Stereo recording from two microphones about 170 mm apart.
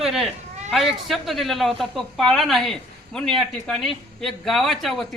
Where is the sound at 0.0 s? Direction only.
Centre (ahead or behind).